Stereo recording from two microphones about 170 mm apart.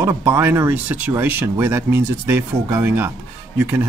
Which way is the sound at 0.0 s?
15° right (ahead or behind).